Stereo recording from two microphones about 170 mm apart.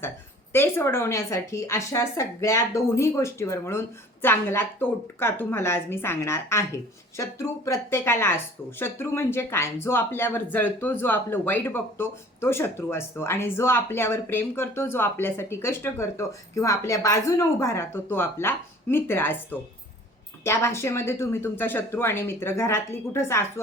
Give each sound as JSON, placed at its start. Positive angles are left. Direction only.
{"t": 0.5, "sound": "speech", "side_deg": 15}